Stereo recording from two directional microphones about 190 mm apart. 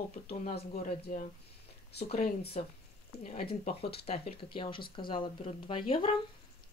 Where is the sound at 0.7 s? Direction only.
35° left (ahead or behind).